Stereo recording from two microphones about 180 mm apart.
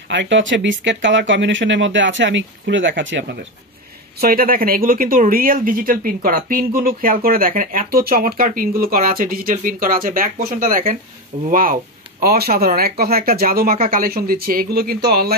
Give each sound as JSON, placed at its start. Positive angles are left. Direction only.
{"t": 0.1, "sound": "speech", "side_deg": -85}
{"t": 4.2, "sound": "speech", "side_deg": -55}